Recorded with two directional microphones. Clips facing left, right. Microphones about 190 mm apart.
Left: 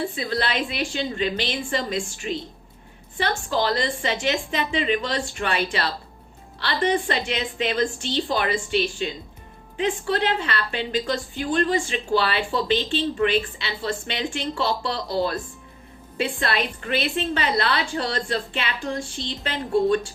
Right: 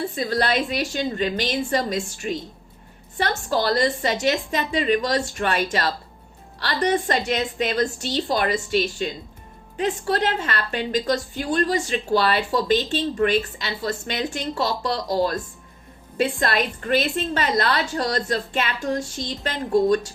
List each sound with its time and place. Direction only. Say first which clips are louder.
0.2 s a woman's voice: right 3 dB; 40° right (ahead or behind)